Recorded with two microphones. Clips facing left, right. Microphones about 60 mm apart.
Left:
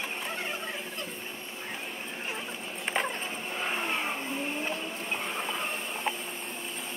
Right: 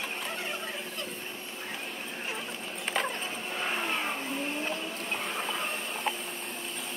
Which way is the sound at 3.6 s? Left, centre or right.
Centre.